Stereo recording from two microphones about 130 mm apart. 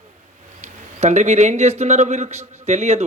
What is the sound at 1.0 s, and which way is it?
A man's voice, 60° right (ahead or behind).